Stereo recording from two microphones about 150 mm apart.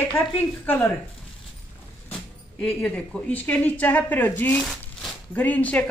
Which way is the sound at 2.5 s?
5° left (ahead or behind).